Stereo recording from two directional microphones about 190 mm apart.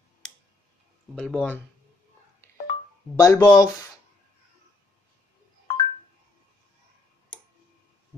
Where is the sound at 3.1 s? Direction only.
15° left (ahead or behind).